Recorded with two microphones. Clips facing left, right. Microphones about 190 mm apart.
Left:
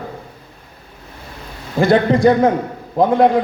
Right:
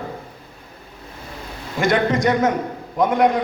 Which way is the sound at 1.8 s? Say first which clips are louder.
Left 5 dB; 30° left (ahead or behind).